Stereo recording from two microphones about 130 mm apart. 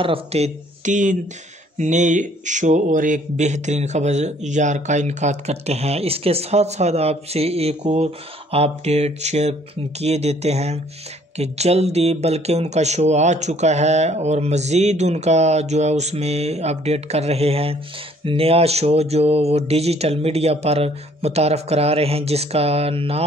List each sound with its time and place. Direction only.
0.0 s speech: 50° right (ahead or behind)